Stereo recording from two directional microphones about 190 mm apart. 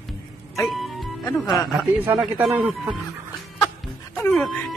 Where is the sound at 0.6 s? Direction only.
Centre (ahead or behind).